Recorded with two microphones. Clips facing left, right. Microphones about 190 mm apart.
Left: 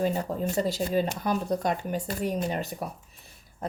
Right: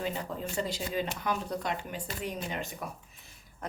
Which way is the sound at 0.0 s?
40° left (ahead or behind).